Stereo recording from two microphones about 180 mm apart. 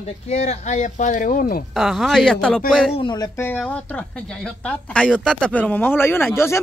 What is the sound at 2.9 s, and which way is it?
Speech, 25° left (ahead or behind).